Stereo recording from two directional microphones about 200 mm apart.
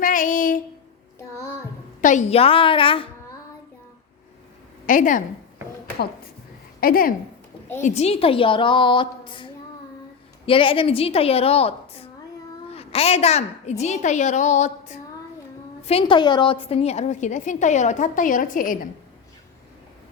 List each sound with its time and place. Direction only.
0.0 s a sound: 40° left (ahead or behind)
2.0 s a woman's voice: 40° left (ahead or behind)
4.9 s a woman's voice: 40° left (ahead or behind)
6.7 s speech: 45° left (ahead or behind)
7.8 s a woman's voice: 35° left (ahead or behind)